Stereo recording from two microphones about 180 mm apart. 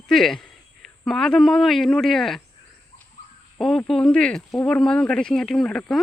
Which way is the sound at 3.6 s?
5° left (ahead or behind).